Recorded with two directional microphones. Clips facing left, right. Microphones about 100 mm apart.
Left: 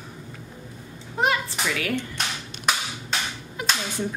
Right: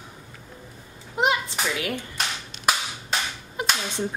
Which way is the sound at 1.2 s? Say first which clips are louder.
Even; 20° right (ahead or behind).